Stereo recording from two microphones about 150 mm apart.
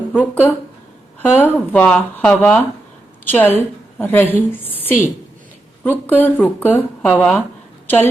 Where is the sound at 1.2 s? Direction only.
15° left (ahead or behind).